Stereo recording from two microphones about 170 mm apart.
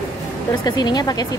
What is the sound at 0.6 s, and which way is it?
Speech, 25° left (ahead or behind).